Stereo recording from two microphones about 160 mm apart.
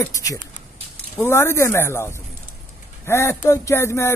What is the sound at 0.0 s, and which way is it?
Speech, 20° left (ahead or behind).